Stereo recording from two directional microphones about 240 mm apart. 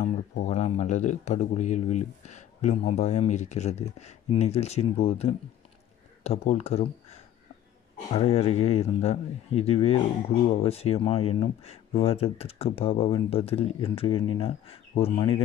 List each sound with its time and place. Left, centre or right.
0.0 s speech: left